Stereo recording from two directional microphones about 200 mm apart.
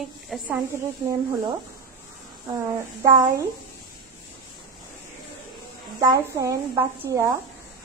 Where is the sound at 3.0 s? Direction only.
15° right (ahead or behind).